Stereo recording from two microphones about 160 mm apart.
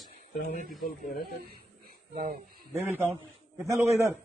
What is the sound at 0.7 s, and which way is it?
Speech, 60° left (ahead or behind).